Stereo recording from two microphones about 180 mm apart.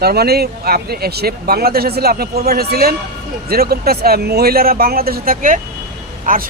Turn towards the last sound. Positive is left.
turn(degrees=-50)  # may be behind; listen again after turning